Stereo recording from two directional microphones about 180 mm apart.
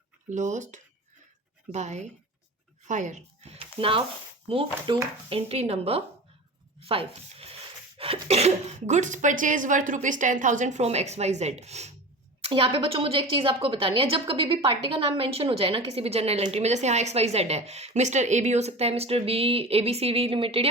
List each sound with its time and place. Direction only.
0.3 s a woman's voice: 40° right (ahead or behind)